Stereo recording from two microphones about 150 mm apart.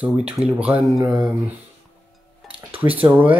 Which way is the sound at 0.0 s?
5° right (ahead or behind).